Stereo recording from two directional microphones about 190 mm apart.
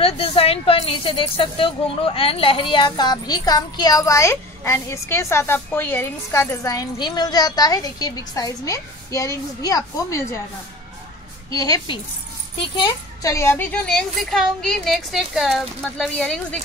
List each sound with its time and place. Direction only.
0.0 s speech: 30° left (ahead or behind)
11.5 s speech: 20° left (ahead or behind); by 16.5 s 5° left (ahead or behind)